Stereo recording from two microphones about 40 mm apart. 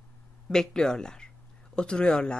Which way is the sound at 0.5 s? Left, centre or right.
Centre.